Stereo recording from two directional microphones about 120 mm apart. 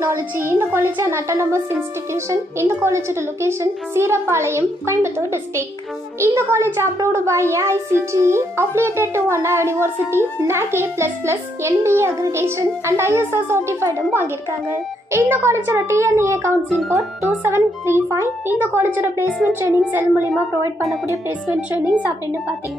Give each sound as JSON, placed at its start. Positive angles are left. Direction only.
{"t": 0.5, "sound": "a child's voice", "side_deg": -20}
{"t": 21.5, "sound": "a woman's voice", "side_deg": -10}